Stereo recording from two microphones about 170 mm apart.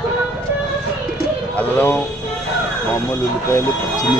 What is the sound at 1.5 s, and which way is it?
Speech, 10° left (ahead or behind).